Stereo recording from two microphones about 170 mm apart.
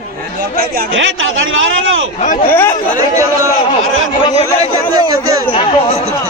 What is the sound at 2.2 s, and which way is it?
Speech, 45° left (ahead or behind).